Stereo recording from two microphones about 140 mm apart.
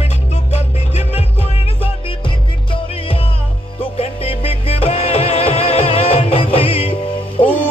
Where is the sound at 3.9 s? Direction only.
45° left (ahead or behind).